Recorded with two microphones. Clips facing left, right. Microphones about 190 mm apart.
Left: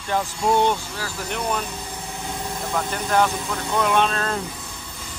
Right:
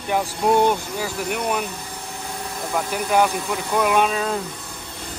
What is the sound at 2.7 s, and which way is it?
Speech, 10° right (ahead or behind).